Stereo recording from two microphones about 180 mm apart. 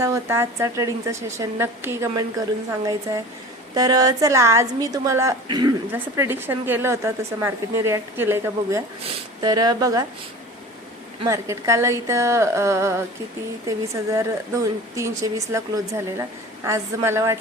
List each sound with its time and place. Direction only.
0.0 s a woman's voice: 15° right (ahead or behind)
3.8 s a woman's voice: 20° right (ahead or behind)
11.3 s a woman's voice: 15° right (ahead or behind)